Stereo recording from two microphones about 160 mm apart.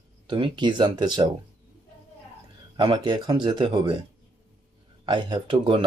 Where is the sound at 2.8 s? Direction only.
30° right (ahead or behind).